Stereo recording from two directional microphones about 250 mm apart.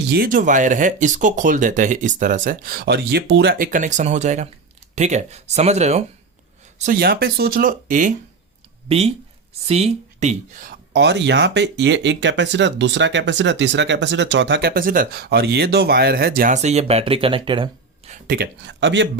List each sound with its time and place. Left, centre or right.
0.1 s speech: right
18.3 s speech: right